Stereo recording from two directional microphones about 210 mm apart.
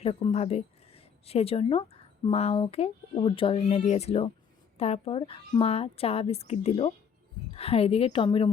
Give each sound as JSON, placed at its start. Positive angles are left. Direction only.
{"t": 0.0, "sound": "speech", "side_deg": 30}